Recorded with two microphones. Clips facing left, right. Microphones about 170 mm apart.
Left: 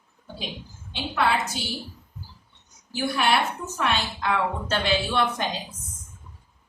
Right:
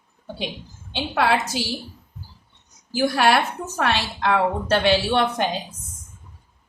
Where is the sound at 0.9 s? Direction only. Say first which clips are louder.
Right 3 dB; 80° right.